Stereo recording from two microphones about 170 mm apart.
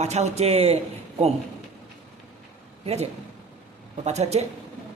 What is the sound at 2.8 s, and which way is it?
Speech, 40° right (ahead or behind).